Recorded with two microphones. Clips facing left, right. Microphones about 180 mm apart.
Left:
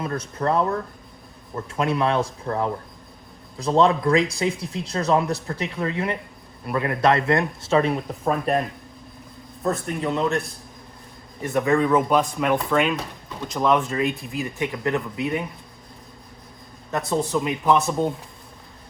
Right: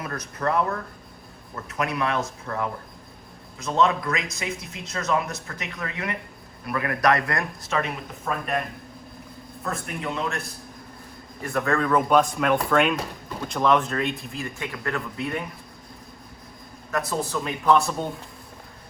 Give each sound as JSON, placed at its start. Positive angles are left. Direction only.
{"t": 0.0, "sound": "speech", "side_deg": 30}
{"t": 1.6, "sound": "speech", "side_deg": 30}
{"t": 9.8, "sound": "speech", "side_deg": 35}
{"t": 11.4, "sound": "speech", "side_deg": 15}
{"t": 11.8, "sound": "speech", "side_deg": 5}
{"t": 14.3, "sound": "speech", "side_deg": 20}
{"t": 17.3, "sound": "speech", "side_deg": 20}